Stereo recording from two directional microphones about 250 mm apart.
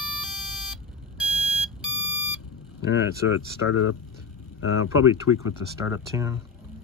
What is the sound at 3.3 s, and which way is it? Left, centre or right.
Speech, left.